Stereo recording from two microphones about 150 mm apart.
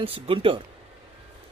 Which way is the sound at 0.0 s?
40° right (ahead or behind).